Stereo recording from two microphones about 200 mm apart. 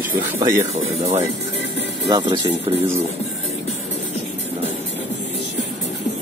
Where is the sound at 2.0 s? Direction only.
20° right (ahead or behind).